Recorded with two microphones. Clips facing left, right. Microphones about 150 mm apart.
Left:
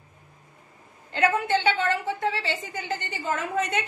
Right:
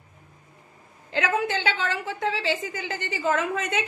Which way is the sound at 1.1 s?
90° right.